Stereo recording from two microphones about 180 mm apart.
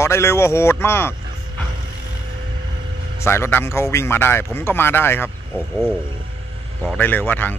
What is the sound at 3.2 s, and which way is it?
A man's voice, 15° left (ahead or behind).